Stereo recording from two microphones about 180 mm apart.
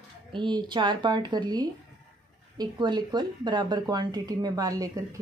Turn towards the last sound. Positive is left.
turn(degrees=-20)  # may be behind; listen again after turning